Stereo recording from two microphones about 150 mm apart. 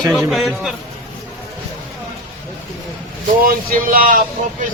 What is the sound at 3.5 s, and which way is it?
Speech, 65° right (ahead or behind).